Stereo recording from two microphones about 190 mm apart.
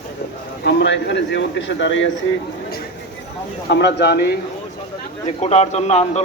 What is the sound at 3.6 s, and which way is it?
Speech, 65° left (ahead or behind).